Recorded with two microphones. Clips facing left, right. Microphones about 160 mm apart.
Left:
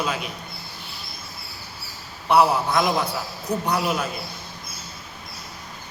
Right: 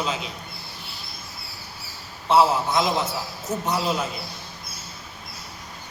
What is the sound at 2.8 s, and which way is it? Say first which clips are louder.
Speech: left 1 dB; 20° right (ahead or behind).